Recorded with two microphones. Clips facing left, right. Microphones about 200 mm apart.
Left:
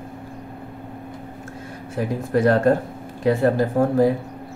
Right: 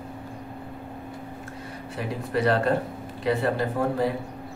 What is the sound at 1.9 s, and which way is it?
Speech, 45° left (ahead or behind).